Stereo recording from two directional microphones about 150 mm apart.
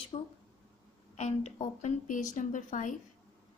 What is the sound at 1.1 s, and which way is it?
A woman's voice, 50° left (ahead or behind).